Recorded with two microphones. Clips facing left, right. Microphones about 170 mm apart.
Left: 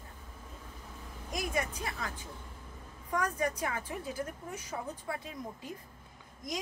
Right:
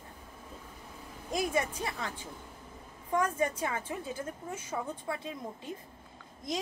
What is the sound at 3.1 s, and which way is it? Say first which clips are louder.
A woman's voice: right 3 dB; 25° right (ahead or behind).